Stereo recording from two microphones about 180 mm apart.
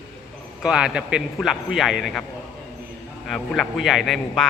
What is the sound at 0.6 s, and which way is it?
Speech, 5° right (ahead or behind).